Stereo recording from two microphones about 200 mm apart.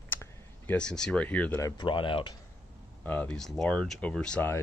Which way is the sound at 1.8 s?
25° left (ahead or behind).